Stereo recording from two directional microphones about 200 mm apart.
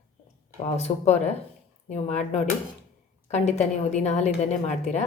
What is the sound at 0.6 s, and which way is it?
Speech, 35° left (ahead or behind).